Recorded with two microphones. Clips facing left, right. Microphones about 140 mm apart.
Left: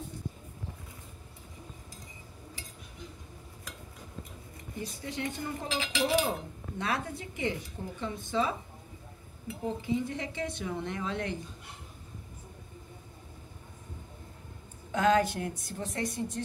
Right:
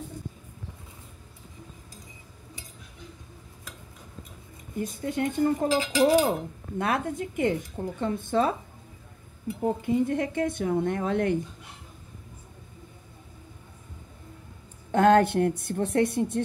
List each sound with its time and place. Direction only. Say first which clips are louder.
4.7 s speech: right 8 dB; 50° right (ahead or behind)
9.6 s speech: right 7 dB; 50° right (ahead or behind)
14.9 s a woman's voice: right 6 dB; 60° right (ahead or behind)